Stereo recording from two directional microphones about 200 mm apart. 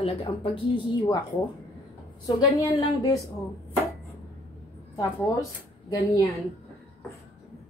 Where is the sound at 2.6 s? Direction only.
15° left (ahead or behind).